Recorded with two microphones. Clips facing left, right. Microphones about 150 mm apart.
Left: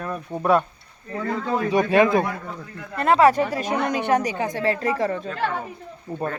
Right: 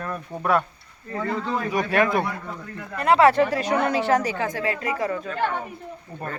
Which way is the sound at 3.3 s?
15° left (ahead or behind).